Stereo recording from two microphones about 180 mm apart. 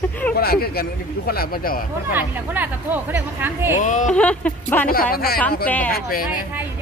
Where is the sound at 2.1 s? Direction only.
10° right (ahead or behind).